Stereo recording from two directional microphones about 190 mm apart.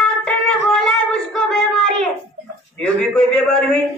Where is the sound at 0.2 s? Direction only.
Centre (ahead or behind).